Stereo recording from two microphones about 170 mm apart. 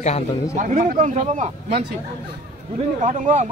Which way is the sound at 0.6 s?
50° right (ahead or behind).